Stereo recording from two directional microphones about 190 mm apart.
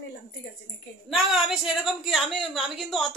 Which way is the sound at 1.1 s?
Centre (ahead or behind).